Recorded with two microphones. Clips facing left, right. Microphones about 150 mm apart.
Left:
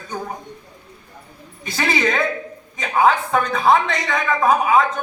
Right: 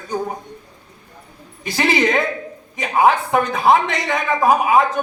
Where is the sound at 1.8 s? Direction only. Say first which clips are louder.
Right 3 dB; 20° right (ahead or behind).